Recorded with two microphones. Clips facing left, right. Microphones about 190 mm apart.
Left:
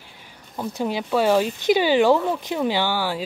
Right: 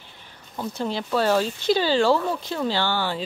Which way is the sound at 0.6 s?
15° left (ahead or behind).